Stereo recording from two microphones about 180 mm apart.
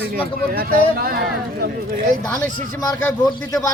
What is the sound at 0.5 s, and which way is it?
Speech, 55° right (ahead or behind).